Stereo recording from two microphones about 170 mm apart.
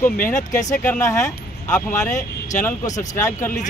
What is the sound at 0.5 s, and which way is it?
Speech, 20° left (ahead or behind).